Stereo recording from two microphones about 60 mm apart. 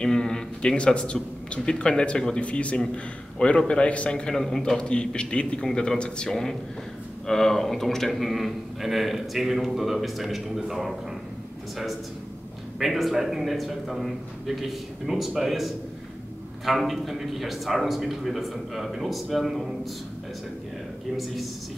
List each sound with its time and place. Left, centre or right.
0.0 s a man's voice: centre
4.8 s a man's voice: centre
12.7 s a man's voice: centre